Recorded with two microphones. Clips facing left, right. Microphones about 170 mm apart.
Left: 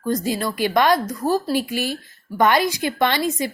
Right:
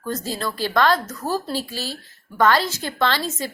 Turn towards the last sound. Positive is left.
turn(degrees=15)  # may be behind; listen again after turning